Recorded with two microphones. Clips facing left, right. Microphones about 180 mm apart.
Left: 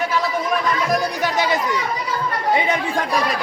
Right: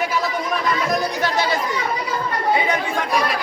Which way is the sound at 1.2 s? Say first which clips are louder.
Left 1 dB; 15° left (ahead or behind).